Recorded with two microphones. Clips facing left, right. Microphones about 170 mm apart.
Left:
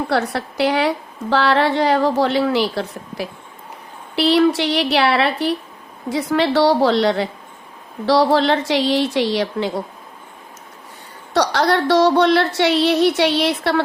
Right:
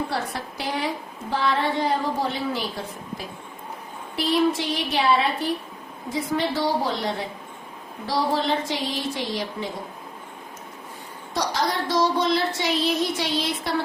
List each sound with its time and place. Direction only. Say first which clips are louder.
0.1 s a woman's voice: left 9 dB; 75° left (ahead or behind)
11.3 s a woman's voice: left 8 dB; 70° left (ahead or behind)